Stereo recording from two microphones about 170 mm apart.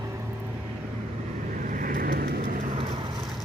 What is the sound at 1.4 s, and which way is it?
Vehicle, 50° right (ahead or behind).